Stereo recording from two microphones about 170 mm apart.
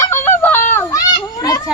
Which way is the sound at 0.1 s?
10° left (ahead or behind).